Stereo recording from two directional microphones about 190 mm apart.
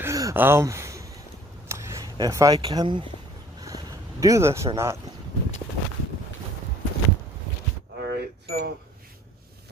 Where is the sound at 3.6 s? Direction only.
15° right (ahead or behind).